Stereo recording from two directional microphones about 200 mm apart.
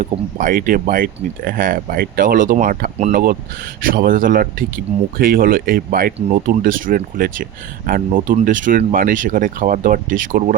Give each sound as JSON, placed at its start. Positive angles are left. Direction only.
{"t": 0.0, "sound": "speech", "side_deg": -40}